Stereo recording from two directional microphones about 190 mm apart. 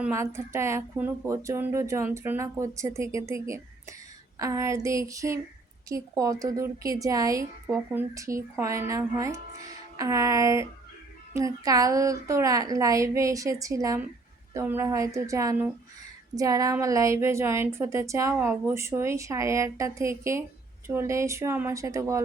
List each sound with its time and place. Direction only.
0.0 s a woman's voice: 15° right (ahead or behind)